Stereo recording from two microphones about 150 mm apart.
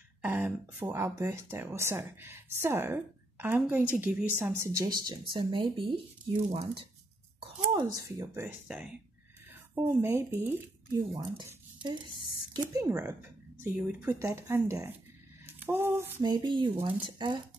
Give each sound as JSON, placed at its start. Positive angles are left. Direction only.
{"t": 0.2, "sound": "speech", "side_deg": -15}
{"t": 4.8, "sound": "speech", "side_deg": -30}
{"t": 7.7, "sound": "speech", "side_deg": -25}
{"t": 8.4, "sound": "speech", "side_deg": -10}
{"t": 10.9, "sound": "speech", "side_deg": -30}
{"t": 15.4, "sound": "a sound", "side_deg": -15}
{"t": 16.2, "sound": "speech", "side_deg": -30}